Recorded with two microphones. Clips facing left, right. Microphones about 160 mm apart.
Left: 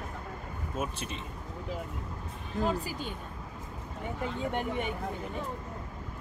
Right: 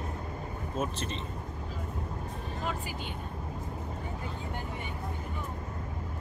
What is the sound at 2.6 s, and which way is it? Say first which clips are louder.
Speech: left 7 dB; 35° left (ahead or behind).